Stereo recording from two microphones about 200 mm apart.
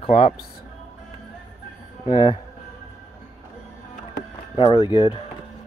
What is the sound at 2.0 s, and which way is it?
Speech, 20° left (ahead or behind).